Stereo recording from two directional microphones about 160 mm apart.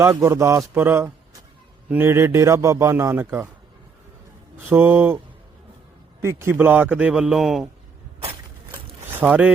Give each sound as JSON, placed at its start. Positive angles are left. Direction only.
{"t": 0.0, "sound": "a man's voice", "side_deg": -20}
{"t": 4.5, "sound": "a man's voice", "side_deg": -15}
{"t": 6.2, "sound": "a man's voice", "side_deg": -15}
{"t": 9.2, "sound": "a man's voice", "side_deg": -10}